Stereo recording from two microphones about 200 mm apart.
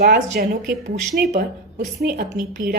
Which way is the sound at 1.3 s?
35° right (ahead or behind).